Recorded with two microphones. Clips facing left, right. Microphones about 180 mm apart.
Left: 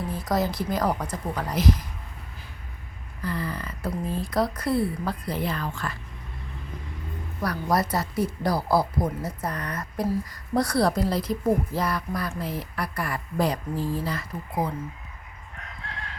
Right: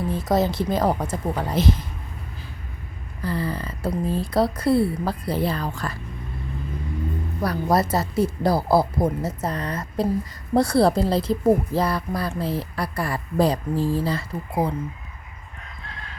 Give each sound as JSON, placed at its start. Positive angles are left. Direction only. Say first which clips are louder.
{"t": 0.1, "sound": "speech", "louder": "right 5 dB", "side_deg": -25}
{"t": 3.2, "sound": "speech", "louder": "right 4 dB", "side_deg": -30}
{"t": 7.4, "sound": "speech", "louder": "right 4 dB", "side_deg": -25}